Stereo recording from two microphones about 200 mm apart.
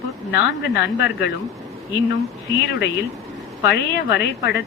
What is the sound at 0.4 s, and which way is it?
Speech, 55° left (ahead or behind).